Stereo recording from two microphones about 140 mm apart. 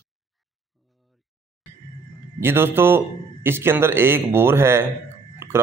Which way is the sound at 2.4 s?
15° right (ahead or behind).